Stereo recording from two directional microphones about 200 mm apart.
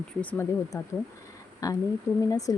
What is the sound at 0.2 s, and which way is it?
Speech, 10° left (ahead or behind).